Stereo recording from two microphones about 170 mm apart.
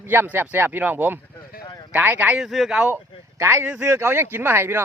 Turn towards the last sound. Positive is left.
turn(degrees=-15)  # may be behind; listen again after turning